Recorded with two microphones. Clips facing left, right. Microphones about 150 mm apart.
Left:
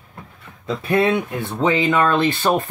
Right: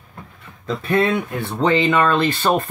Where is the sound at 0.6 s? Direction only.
5° left (ahead or behind).